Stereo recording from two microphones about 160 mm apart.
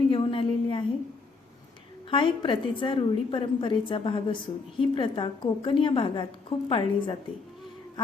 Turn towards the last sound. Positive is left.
turn(degrees=30)  # may be behind; listen again after turning